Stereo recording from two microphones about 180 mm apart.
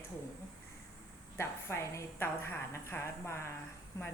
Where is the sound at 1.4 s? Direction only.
15° left (ahead or behind).